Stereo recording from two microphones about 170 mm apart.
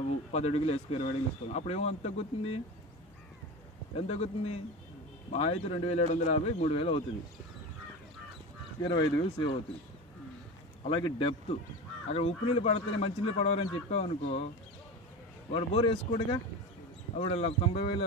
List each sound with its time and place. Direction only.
0.3 s a man's voice: 40° left (ahead or behind)
3.9 s a man's voice: 40° left (ahead or behind)
8.8 s speech: 25° left (ahead or behind)
10.8 s a man's voice: 30° left (ahead or behind)
15.5 s a man's voice: 30° left (ahead or behind)